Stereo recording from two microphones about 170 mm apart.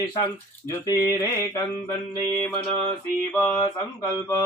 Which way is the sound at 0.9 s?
20° left (ahead or behind).